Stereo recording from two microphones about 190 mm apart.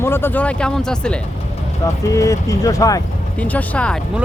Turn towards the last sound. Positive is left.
turn(degrees=5)  # may be behind; listen again after turning